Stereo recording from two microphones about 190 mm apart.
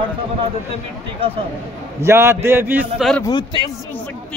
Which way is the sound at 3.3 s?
25° left (ahead or behind).